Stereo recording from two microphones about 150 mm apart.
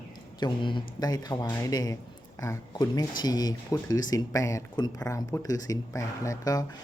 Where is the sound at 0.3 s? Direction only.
30° left (ahead or behind).